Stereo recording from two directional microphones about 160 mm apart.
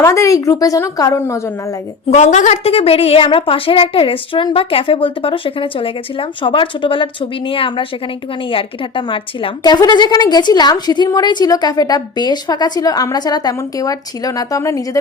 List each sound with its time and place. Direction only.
0.0 s a woman's voice: 20° left (ahead or behind)
2.0 s a woman's voice: 45° left (ahead or behind); by 14.8 s 20° left (ahead or behind)